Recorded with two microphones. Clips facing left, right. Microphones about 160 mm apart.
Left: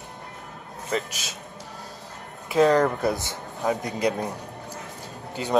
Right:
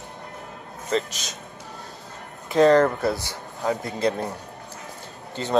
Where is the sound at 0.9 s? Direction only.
10° left (ahead or behind).